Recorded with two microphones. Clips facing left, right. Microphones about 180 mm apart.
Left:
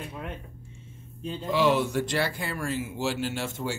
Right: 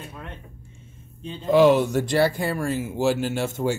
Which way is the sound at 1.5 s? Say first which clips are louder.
Right 7 dB; 45° right (ahead or behind).